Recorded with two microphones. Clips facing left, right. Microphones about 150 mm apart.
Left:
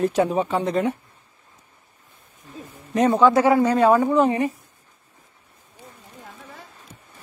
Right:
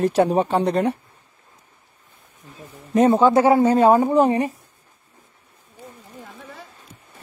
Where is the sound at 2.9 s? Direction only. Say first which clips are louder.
Right 2 dB; 30° right (ahead or behind).